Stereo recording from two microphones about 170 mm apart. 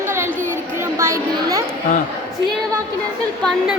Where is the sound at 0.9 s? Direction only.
15° right (ahead or behind).